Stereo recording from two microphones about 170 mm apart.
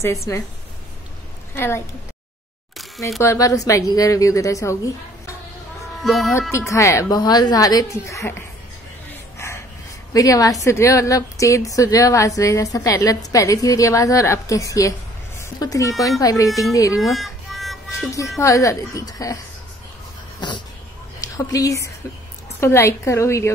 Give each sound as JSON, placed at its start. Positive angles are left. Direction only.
{"t": 0.0, "sound": "a woman's voice", "side_deg": 15}
{"t": 1.5, "sound": "a woman's voice", "side_deg": 15}
{"t": 3.2, "sound": "a woman's voice", "side_deg": 20}
{"t": 6.0, "sound": "speech", "side_deg": 0}
{"t": 6.5, "sound": "a woman's voice", "side_deg": 15}
{"t": 9.4, "sound": "a sound", "side_deg": 15}
{"t": 10.1, "sound": "a woman's voice", "side_deg": 20}
{"t": 17.0, "sound": "music", "side_deg": 0}
{"t": 18.4, "sound": "a woman's voice", "side_deg": 20}